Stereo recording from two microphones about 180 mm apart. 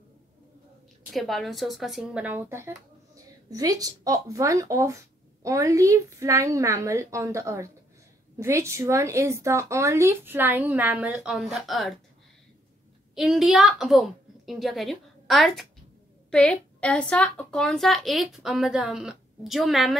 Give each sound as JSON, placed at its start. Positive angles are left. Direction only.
{"t": 1.1, "sound": "a woman's voice", "side_deg": 0}
{"t": 13.1, "sound": "a woman's voice", "side_deg": 0}